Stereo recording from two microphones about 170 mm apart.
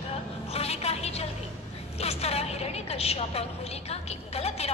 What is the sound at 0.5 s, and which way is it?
A woman's voice, 35° left (ahead or behind).